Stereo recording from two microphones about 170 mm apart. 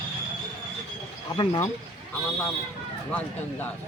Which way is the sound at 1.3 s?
25° left (ahead or behind).